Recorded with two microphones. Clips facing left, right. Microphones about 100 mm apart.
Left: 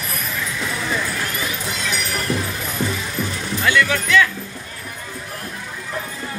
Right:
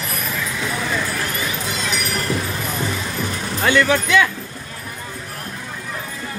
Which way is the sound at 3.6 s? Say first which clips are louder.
Right 2 dB; 30° right (ahead or behind).